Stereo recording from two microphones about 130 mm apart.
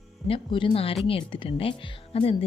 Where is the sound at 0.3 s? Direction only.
45° left (ahead or behind).